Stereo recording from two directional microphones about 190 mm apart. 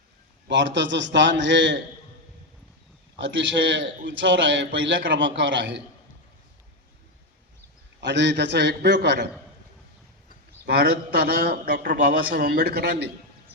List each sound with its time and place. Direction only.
0.4 s a man's voice: 70° right (ahead or behind)
3.2 s a man's voice: 70° right (ahead or behind)
8.0 s a man's voice: 65° right (ahead or behind)
10.7 s a man's voice: 55° right (ahead or behind)